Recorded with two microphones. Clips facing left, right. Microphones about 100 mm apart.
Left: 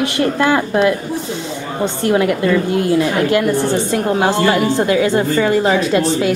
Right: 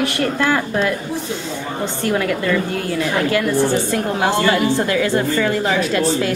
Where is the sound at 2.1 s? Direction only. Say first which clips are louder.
Left 5 dB; 20° left (ahead or behind).